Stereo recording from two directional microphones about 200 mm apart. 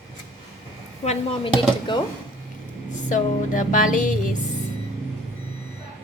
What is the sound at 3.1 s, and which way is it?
Speech, 40° left (ahead or behind).